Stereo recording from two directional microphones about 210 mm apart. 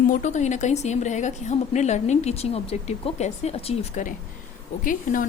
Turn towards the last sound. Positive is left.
turn(degrees=40)  # may be behind; listen again after turning